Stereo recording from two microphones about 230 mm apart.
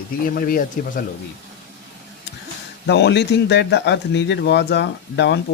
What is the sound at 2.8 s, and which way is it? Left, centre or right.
Speech, left.